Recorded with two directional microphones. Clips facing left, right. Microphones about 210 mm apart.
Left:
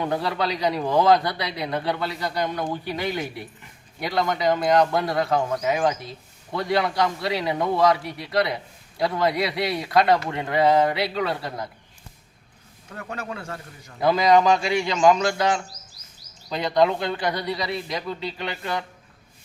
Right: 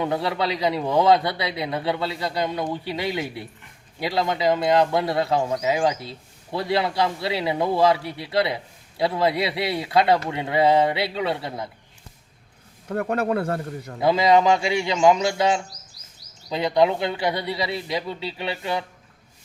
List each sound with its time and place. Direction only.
0.0 s speech: 25° right (ahead or behind)
12.9 s speech: 55° right (ahead or behind)
14.0 s speech: 25° right (ahead or behind)